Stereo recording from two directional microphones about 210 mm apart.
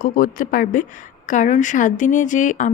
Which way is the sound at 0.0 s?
40° left (ahead or behind).